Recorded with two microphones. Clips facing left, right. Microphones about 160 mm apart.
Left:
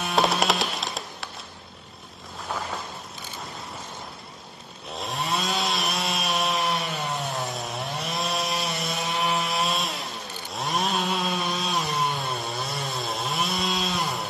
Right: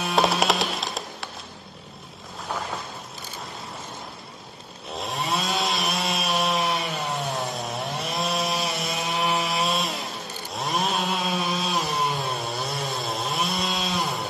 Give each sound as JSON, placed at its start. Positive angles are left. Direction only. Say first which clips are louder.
{"t": 0.0, "sound": "music", "louder": "right 1 dB", "side_deg": 0}
{"t": 4.9, "sound": "chainsaw", "louder": "right 1 dB", "side_deg": 0}